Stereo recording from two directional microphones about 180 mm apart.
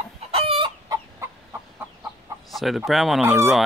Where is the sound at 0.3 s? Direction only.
30° right (ahead or behind).